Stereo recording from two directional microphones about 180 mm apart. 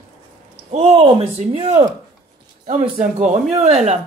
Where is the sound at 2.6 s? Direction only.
45° right (ahead or behind).